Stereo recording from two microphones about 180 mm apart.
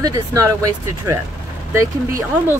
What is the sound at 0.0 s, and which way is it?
Speech, 20° right (ahead or behind).